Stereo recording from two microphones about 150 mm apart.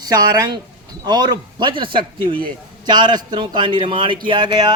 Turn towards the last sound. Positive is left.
turn(degrees=-30)  # may be behind; listen again after turning